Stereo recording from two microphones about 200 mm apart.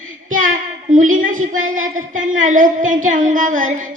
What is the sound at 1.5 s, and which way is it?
Speech, 85° right.